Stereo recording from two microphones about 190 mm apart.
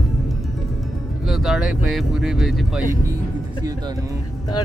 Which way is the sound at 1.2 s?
Centre (ahead or behind).